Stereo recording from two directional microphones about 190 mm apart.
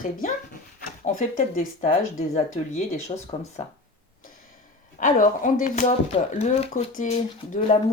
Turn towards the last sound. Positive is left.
turn(degrees=40)  # may be behind; listen again after turning